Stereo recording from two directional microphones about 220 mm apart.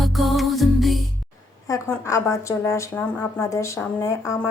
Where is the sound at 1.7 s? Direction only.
15° left (ahead or behind).